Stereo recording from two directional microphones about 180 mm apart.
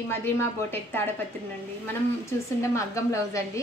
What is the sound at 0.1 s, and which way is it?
Speech, 15° left (ahead or behind).